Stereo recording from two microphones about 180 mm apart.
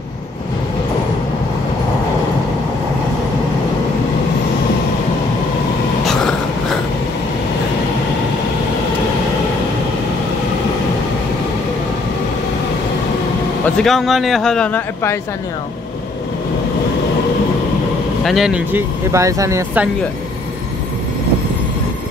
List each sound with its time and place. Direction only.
13.7 s a man's voice: centre (ahead or behind)
18.2 s speech: centre (ahead or behind)